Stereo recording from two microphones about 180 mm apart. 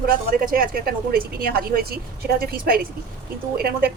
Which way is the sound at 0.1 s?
55° right (ahead or behind).